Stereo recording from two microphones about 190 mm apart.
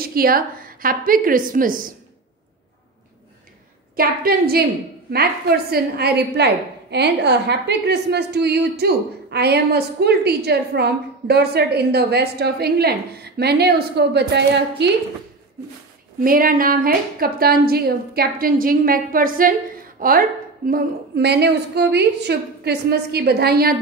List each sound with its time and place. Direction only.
0.0 s a woman's voice: 50° right (ahead or behind)
3.9 s a woman's voice: 50° right (ahead or behind)
5.7 s a woman's voice: 55° right (ahead or behind)
16.2 s a woman's voice: 50° right (ahead or behind)